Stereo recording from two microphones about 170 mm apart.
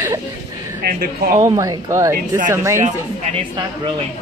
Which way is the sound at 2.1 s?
50° right (ahead or behind).